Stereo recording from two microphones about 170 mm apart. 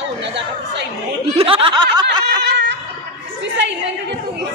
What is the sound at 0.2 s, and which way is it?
Chatter, 90° right.